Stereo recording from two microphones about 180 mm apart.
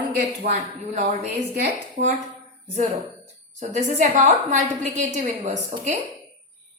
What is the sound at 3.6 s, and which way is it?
A woman's voice, 40° right (ahead or behind).